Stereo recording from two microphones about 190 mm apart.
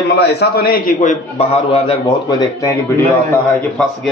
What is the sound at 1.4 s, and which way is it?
A man's voice, 30° left (ahead or behind).